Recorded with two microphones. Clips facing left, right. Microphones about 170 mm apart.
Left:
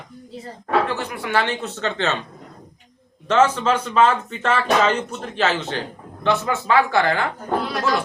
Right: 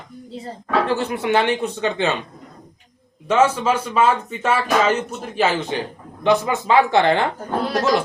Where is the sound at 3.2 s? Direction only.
10° right (ahead or behind).